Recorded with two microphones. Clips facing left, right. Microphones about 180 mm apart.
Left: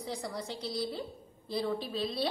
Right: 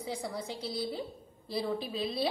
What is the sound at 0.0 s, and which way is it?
A woman's voice, centre (ahead or behind).